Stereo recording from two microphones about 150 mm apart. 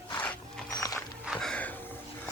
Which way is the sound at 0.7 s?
20° left (ahead or behind).